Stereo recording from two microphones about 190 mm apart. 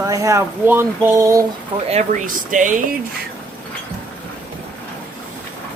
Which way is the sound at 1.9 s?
40° right (ahead or behind).